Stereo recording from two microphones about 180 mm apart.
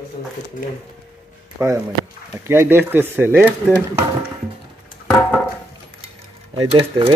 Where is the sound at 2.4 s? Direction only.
15° right (ahead or behind).